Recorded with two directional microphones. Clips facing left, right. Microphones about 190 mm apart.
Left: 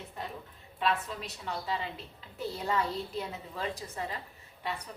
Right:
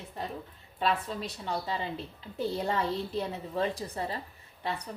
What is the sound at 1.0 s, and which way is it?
Speech, 35° right (ahead or behind).